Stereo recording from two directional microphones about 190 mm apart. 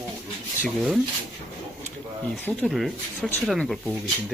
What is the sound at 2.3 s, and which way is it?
Speech, 5° left (ahead or behind).